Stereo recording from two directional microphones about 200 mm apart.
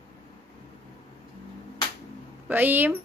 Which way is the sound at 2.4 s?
10° right (ahead or behind).